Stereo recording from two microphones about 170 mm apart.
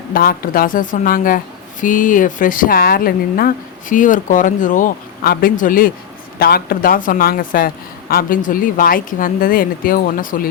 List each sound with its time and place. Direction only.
0.1 s speech: 60° left (ahead or behind)